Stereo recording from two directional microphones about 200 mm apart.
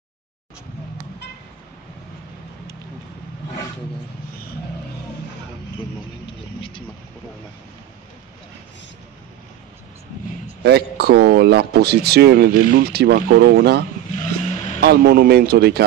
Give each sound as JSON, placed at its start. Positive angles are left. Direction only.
{"t": 10.6, "sound": "speech", "side_deg": -55}